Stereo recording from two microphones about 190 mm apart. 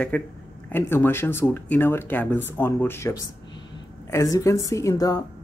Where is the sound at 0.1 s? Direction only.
5° left (ahead or behind).